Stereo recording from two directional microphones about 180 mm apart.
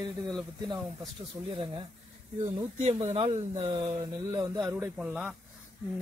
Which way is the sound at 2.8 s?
35° right (ahead or behind).